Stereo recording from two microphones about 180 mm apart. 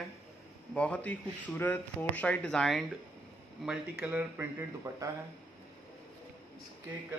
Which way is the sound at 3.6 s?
5° right (ahead or behind).